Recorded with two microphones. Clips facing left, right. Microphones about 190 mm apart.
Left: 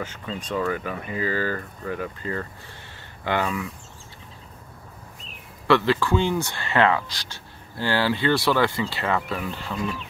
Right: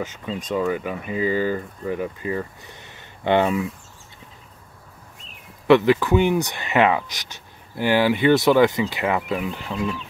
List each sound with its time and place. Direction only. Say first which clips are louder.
0.5 s speech: right 3 dB; 15° right (ahead or behind)
5.7 s speech: right 5 dB; 20° right (ahead or behind)